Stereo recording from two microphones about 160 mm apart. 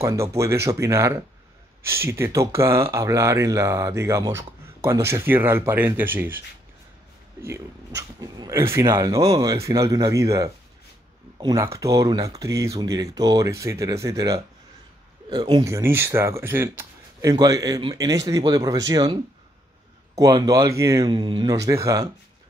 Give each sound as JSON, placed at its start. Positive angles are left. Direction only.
{"t": 0.0, "sound": "speech", "side_deg": -20}
{"t": 7.4, "sound": "speech", "side_deg": -15}
{"t": 20.2, "sound": "speech", "side_deg": -25}